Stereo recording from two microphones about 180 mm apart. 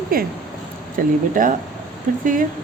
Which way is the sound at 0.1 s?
55° right (ahead or behind).